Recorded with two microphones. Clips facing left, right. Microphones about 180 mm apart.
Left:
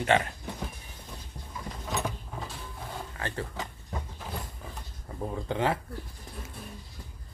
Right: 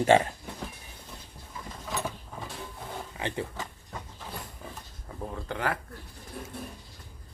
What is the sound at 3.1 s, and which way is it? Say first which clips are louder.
Speech: right 3 dB; 15° right (ahead or behind).